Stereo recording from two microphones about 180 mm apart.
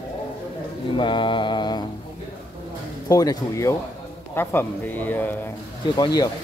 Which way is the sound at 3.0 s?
20° left (ahead or behind).